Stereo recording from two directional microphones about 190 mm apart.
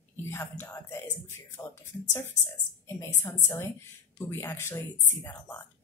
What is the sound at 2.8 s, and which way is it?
Speech, 15° left (ahead or behind).